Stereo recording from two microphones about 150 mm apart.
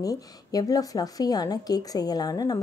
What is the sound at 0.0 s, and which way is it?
A woman's voice, 25° left (ahead or behind).